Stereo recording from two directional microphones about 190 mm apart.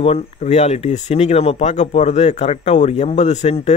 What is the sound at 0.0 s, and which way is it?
Speech, 35° left (ahead or behind).